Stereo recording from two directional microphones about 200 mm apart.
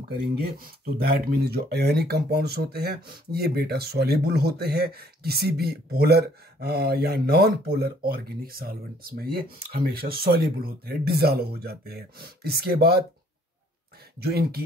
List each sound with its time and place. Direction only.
0.4 s speech: 50° right (ahead or behind)
14.2 s speech: 50° right (ahead or behind)